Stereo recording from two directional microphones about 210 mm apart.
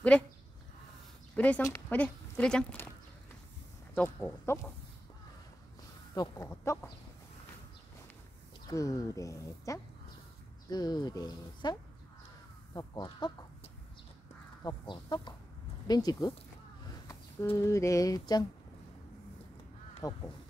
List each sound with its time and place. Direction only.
1.3 s speech: 5° left (ahead or behind)
3.9 s speech: 10° left (ahead or behind)
6.1 s speech: 15° left (ahead or behind)
8.6 s speech: 15° left (ahead or behind)
12.7 s speech: 20° left (ahead or behind)
14.6 s speech: 20° left (ahead or behind)
20.0 s speech: 15° left (ahead or behind)